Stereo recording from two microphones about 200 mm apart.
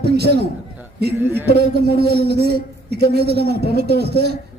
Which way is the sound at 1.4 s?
55° right (ahead or behind).